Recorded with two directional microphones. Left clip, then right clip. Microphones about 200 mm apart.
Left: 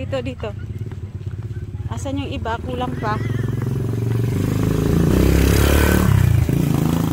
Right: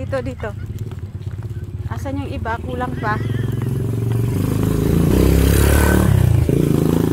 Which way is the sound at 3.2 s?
45° right (ahead or behind).